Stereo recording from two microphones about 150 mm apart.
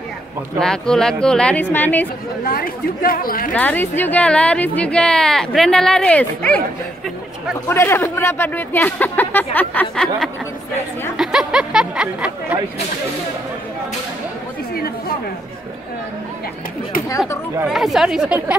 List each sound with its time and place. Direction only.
0.6 s speech: 5° left (ahead or behind)
2.4 s a woman's voice: 80° left
3.5 s speech: 10° left (ahead or behind)
7.6 s speech: 15° left (ahead or behind)
11.1 s speech: 5° right (ahead or behind)
14.7 s chatter: 90° left
17.6 s speech: centre (ahead or behind)